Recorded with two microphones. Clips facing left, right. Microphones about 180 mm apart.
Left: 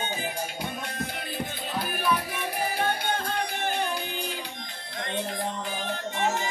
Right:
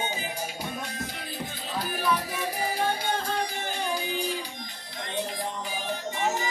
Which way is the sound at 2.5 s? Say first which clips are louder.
Left 1 dB; 60° left (ahead or behind).